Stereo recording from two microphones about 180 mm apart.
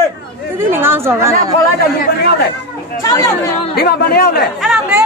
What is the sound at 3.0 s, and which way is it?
Speech, 20° left (ahead or behind).